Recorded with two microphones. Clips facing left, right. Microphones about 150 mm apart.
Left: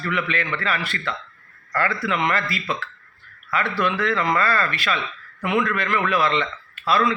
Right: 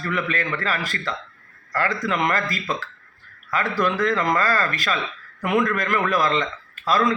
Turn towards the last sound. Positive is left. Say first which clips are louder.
# even
turn(degrees=-40)  # may be behind; listen again after turning